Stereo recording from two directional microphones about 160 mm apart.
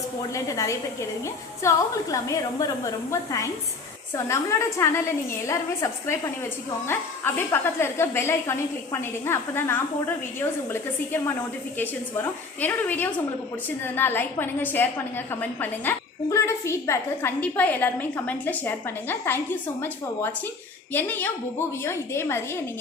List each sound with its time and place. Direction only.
0.2 s a woman's voice: 20° left (ahead or behind)